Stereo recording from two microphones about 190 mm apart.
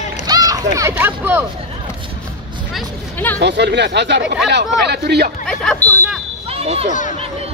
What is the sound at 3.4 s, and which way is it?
Speech, 65° right (ahead or behind).